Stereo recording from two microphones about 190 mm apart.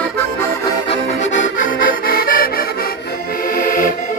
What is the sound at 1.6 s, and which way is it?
Accordion, 50° left (ahead or behind).